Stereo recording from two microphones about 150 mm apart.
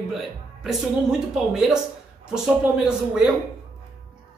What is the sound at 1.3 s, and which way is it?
Speech, 5° right (ahead or behind).